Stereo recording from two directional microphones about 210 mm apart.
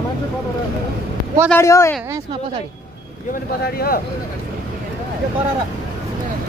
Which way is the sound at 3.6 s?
45° left (ahead or behind).